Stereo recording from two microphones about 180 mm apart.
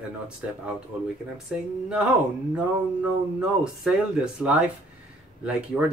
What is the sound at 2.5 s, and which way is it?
Speech, 5° right (ahead or behind).